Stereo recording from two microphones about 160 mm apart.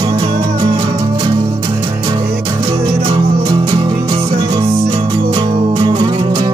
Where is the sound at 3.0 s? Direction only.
30° right (ahead or behind).